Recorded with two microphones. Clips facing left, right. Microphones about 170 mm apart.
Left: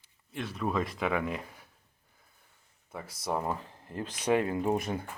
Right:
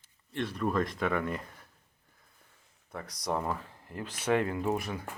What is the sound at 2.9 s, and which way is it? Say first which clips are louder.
Speech: even; 5° left (ahead or behind).